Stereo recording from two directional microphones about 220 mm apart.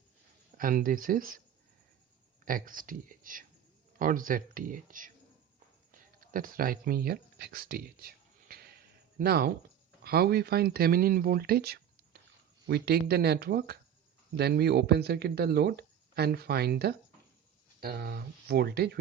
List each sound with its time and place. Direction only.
0.5 s speech: 40° right (ahead or behind)
2.4 s speech: 40° right (ahead or behind)
5.9 s a sound: 40° right (ahead or behind)
10.0 s speech: 45° right (ahead or behind)